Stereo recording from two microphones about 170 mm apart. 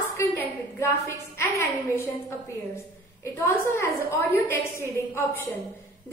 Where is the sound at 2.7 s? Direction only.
15° left (ahead or behind).